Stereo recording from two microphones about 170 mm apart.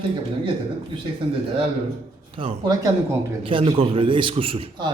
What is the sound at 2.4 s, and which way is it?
A man's voice, 35° right (ahead or behind).